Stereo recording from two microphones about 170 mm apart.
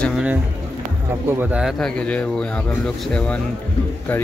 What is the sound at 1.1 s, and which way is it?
A man's voice, 15° right (ahead or behind).